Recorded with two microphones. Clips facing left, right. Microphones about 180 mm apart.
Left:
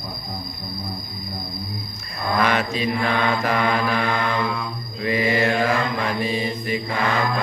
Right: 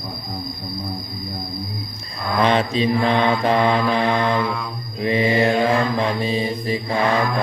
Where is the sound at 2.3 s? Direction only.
30° right (ahead or behind).